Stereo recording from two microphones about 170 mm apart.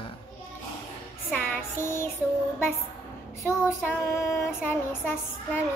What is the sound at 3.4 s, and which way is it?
Child singing, 15° left (ahead or behind).